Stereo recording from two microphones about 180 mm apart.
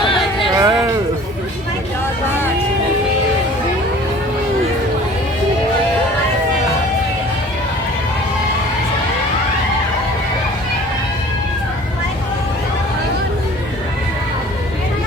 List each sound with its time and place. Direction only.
0.5 s music: 20° right (ahead or behind)